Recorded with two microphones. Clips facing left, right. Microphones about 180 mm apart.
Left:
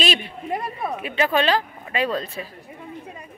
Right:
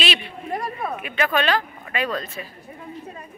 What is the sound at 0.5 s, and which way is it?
Speech, 20° left (ahead or behind).